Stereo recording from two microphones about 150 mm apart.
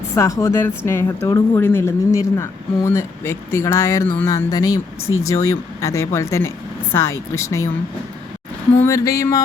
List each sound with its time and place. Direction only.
0.1 s speech: 20° left (ahead or behind)
8.8 s speech: 20° left (ahead or behind)